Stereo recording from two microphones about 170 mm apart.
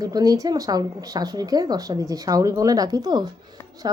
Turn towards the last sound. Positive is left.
turn(degrees=-25)  # may be behind; listen again after turning